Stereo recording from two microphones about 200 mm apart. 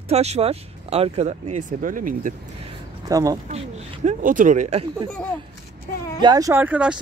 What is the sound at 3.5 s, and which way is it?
Speech, 35° right (ahead or behind).